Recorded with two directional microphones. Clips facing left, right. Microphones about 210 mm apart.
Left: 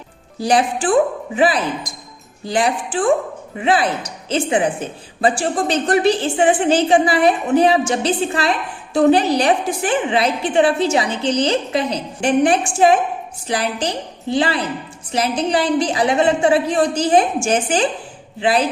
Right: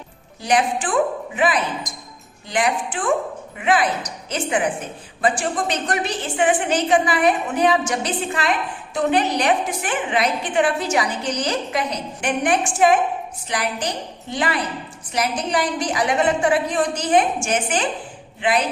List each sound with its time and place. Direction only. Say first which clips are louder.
0.3 s speech: left 3 dB; 30° left (ahead or behind)